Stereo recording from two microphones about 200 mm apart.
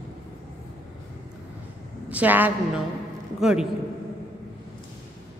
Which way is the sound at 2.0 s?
10° right (ahead or behind).